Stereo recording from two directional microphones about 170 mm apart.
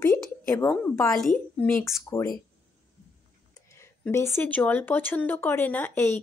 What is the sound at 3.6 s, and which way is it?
Speech, 15° left (ahead or behind).